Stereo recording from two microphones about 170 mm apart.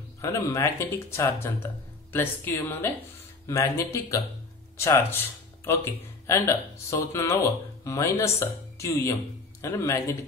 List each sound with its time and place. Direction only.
0.2 s speech: 20° left (ahead or behind)
6.2 s speech: 20° left (ahead or behind)